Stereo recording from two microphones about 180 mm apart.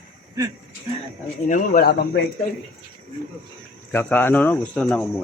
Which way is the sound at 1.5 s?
50° left (ahead or behind).